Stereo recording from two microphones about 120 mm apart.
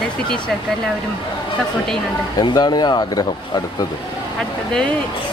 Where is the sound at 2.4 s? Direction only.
40° left (ahead or behind).